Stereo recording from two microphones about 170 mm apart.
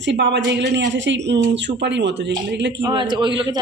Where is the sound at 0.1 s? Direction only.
90° right.